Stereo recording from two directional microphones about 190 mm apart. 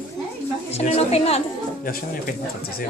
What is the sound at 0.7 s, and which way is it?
Speech, 35° left (ahead or behind).